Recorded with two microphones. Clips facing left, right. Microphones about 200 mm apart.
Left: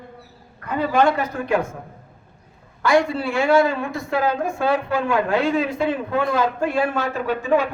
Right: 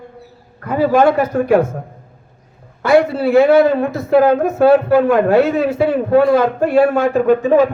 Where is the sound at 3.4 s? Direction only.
55° right (ahead or behind).